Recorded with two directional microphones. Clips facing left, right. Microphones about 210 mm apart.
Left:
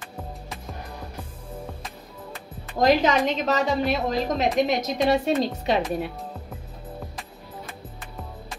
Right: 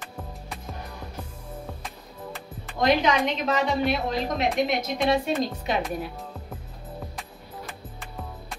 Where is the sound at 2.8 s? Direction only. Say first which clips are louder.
Left 2 dB; 40° left (ahead or behind).